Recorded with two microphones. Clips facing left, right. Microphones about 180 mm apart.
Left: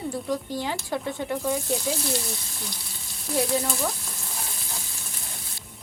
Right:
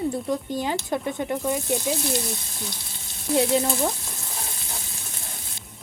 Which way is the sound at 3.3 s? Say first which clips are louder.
Right 4 dB; 25° right (ahead or behind).